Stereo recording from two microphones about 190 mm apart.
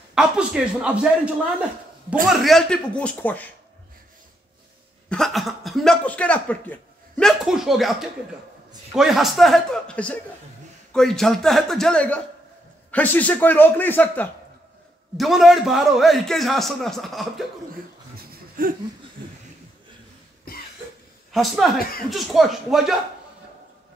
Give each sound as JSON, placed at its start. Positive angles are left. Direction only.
{"t": 0.1, "sound": "a man's voice", "side_deg": -5}
{"t": 5.1, "sound": "a man's voice", "side_deg": 0}
{"t": 15.1, "sound": "a man's voice", "side_deg": 0}
{"t": 18.1, "sound": "laughter", "side_deg": -50}
{"t": 21.3, "sound": "a woman's voice", "side_deg": 0}